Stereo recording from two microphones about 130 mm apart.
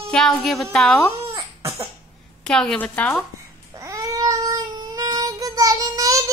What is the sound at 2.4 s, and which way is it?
Speech, 5° left (ahead or behind).